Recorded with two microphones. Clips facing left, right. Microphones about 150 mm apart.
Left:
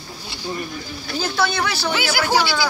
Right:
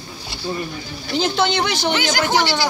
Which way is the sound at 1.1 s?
20° right (ahead or behind).